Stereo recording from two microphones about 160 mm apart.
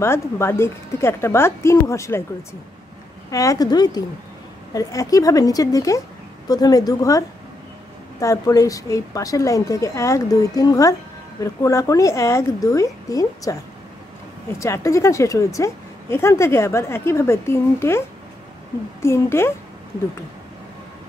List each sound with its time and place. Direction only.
0.0 s a woman's voice: 15° left (ahead or behind)
3.3 s a woman's voice: 20° left (ahead or behind)
14.6 s a woman's voice: 20° left (ahead or behind)